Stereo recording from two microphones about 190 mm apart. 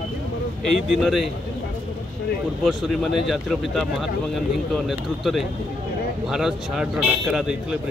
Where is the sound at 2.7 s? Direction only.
Centre (ahead or behind).